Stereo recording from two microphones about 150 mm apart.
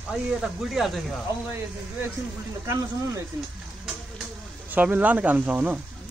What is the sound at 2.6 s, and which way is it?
Speech, 20° right (ahead or behind).